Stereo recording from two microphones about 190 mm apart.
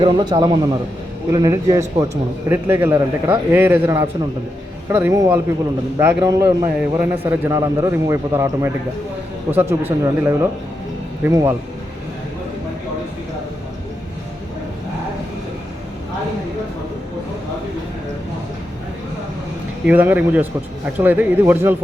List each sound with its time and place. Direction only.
0.0 s a man's voice: 25° right (ahead or behind)
19.8 s a man's voice: 10° right (ahead or behind)